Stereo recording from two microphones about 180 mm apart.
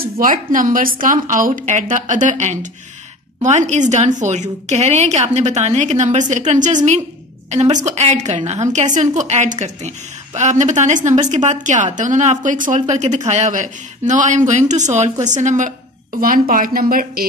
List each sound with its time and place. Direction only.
0.0 s a woman's voice: 50° right (ahead or behind)